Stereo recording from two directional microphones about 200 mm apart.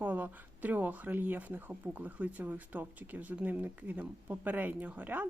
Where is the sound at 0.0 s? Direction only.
10° right (ahead or behind).